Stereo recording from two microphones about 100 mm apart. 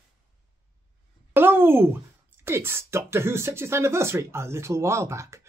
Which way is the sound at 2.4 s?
25° right (ahead or behind).